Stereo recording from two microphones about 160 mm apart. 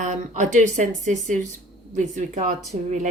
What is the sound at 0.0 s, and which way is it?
Speech, 50° right (ahead or behind).